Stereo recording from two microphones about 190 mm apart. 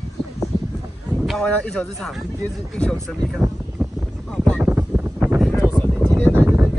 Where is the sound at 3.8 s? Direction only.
Centre (ahead or behind).